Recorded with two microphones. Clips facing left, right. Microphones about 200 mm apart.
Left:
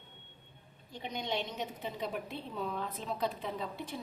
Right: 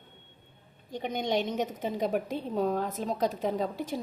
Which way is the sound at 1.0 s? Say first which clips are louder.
Right 8 dB; 50° right (ahead or behind).